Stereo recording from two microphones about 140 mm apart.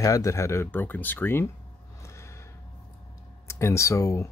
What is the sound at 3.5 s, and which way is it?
Speech, 20° left (ahead or behind).